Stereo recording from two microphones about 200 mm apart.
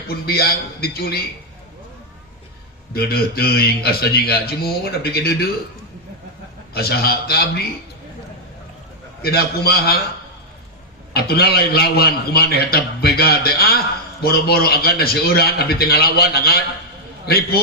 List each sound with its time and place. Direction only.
0.1 s a man's voice: 50° left (ahead or behind)
2.9 s a man's voice: 50° left (ahead or behind)
6.7 s a man's voice: 50° left (ahead or behind)
9.2 s a man's voice: 50° left (ahead or behind)
11.1 s a man's voice: 50° left (ahead or behind)